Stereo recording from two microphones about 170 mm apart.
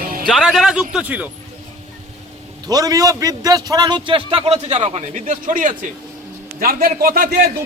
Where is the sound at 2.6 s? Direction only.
20° right (ahead or behind).